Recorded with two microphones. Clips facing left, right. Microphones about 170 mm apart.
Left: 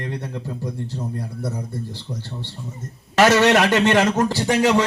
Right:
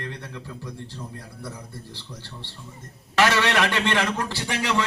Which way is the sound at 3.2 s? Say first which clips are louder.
Left 6 dB; 45° left (ahead or behind).